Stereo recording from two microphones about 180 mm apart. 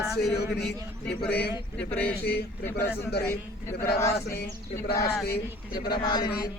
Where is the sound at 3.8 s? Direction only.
15° left (ahead or behind).